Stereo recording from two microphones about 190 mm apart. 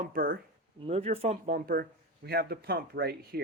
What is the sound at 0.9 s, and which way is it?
Speech, 30° right (ahead or behind).